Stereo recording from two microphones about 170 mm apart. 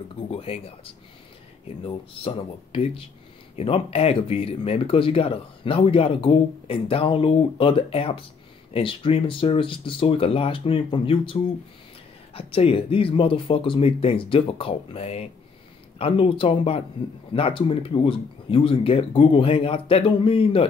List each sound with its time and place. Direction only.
0.3 s speech: 35° left (ahead or behind)
12.4 s speech: 35° left (ahead or behind)